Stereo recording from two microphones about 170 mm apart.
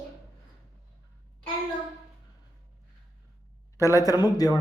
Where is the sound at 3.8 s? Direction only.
20° left (ahead or behind).